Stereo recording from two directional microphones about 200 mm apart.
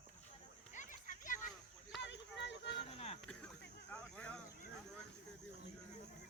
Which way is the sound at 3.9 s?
5° left (ahead or behind).